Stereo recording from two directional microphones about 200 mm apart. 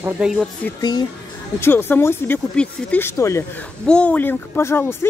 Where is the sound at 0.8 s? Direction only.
20° left (ahead or behind).